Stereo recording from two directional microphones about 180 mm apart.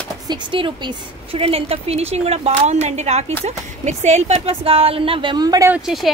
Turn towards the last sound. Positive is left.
turn(degrees=0)  # may be behind; listen again after turning